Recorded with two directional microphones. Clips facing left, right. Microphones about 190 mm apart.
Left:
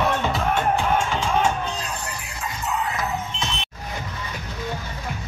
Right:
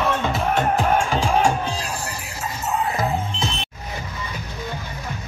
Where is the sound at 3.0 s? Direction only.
30° right (ahead or behind).